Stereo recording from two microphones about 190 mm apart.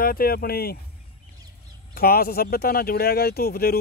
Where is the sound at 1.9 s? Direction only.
50° left (ahead or behind).